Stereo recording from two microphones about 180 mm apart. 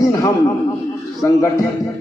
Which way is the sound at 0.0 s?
20° left (ahead or behind).